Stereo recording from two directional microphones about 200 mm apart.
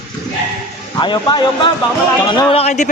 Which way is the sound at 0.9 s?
20° left (ahead or behind).